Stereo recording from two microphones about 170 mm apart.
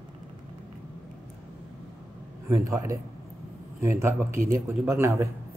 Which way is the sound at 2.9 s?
20° right (ahead or behind).